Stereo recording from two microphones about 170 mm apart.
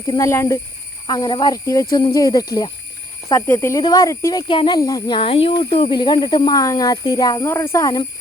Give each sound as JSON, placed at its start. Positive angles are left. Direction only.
{"t": 0.1, "sound": "speech", "side_deg": 15}